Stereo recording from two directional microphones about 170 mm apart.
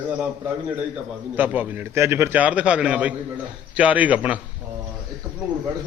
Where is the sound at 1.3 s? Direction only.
10° right (ahead or behind).